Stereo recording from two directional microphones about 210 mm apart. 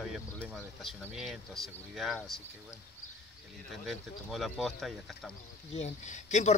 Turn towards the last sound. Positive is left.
turn(degrees=35)  # may be behind; listen again after turning